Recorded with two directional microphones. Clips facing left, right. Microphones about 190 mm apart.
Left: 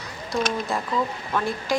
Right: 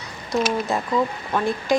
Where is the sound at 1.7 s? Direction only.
20° right (ahead or behind).